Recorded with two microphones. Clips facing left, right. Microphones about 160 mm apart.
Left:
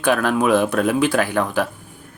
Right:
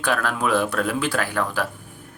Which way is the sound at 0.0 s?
20° left (ahead or behind).